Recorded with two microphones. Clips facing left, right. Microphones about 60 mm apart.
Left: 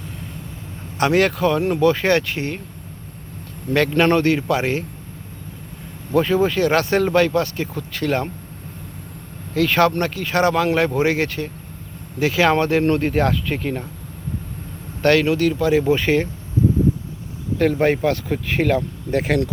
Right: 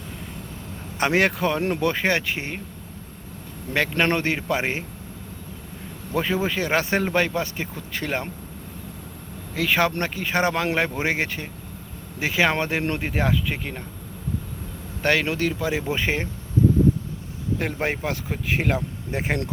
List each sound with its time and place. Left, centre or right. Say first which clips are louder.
0.9 s speech: left 4 dB; right
2.0 s speech: left 5 dB; centre
3.8 s speech: left 5 dB; centre
6.1 s speech: left 7 dB; centre
9.6 s speech: left 5 dB; centre
15.2 s speech: left 6 dB; right
17.6 s speech: left 11 dB; centre
19.1 s speech: left 9 dB; centre